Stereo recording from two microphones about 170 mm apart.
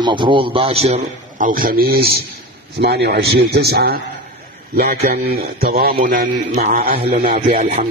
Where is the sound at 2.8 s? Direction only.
75° right (ahead or behind); by 7.5 s 55° right (ahead or behind).